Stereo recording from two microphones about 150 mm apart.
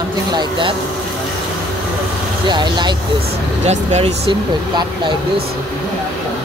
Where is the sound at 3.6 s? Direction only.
45° right (ahead or behind).